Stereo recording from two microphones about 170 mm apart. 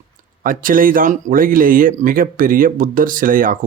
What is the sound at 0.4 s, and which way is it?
Speech, 55° right (ahead or behind).